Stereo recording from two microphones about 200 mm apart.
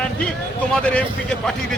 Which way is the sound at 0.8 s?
5° left (ahead or behind).